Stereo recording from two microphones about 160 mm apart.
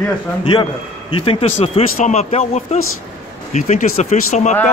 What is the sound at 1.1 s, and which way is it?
Speech, 35° left (ahead or behind).